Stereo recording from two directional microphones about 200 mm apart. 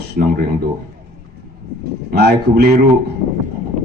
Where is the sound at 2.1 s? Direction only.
55° right (ahead or behind).